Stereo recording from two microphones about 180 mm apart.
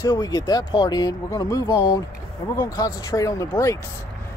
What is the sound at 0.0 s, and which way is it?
Speech, 20° left (ahead or behind).